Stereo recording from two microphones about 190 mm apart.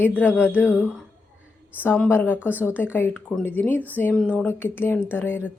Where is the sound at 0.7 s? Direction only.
5° right (ahead or behind).